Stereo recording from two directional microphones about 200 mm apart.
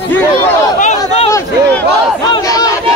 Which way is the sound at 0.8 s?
35° left (ahead or behind).